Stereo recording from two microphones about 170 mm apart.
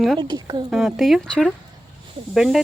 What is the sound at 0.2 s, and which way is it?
Speech, 25° right (ahead or behind).